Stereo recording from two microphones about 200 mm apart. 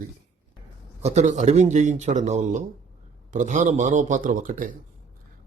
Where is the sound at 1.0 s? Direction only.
35° right (ahead or behind).